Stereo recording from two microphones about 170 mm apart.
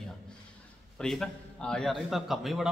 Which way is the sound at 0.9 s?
Centre (ahead or behind).